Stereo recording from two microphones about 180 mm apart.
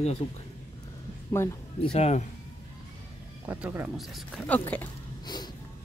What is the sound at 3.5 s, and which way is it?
Speech, 10° right (ahead or behind).